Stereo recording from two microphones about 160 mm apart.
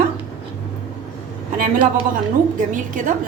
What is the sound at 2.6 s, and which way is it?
Speech, 55° right (ahead or behind).